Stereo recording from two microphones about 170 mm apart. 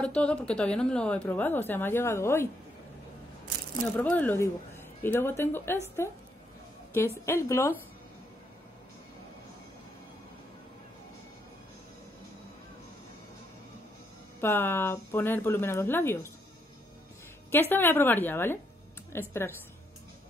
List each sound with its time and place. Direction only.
0.0 s a woman's voice: 5° left (ahead or behind)
3.8 s a woman's voice: 10° left (ahead or behind)
14.4 s a woman's voice: 10° left (ahead or behind)
17.5 s a woman's voice: 10° left (ahead or behind)